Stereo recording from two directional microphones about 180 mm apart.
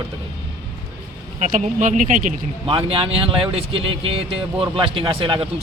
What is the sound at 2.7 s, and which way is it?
Speech, 30° right (ahead or behind).